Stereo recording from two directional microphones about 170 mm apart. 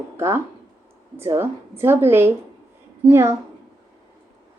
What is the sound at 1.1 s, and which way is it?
Speech, 15° right (ahead or behind).